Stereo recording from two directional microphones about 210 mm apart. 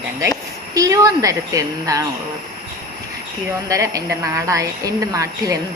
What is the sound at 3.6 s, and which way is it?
A woman's voice, 15° right (ahead or behind).